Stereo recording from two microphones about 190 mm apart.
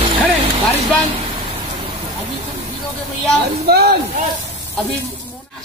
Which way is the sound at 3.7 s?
55° right (ahead or behind).